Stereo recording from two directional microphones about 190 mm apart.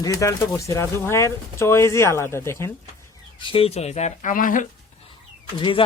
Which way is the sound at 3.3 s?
25° left (ahead or behind).